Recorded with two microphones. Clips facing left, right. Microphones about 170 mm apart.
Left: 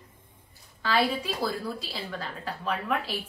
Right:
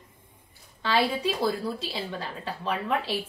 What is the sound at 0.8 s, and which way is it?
A woman's voice, 25° right (ahead or behind).